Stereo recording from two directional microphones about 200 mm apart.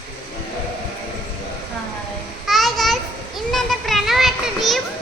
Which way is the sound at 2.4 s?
Centre (ahead or behind).